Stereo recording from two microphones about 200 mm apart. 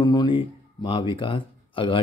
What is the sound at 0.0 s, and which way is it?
A man's voice, 20° left (ahead or behind).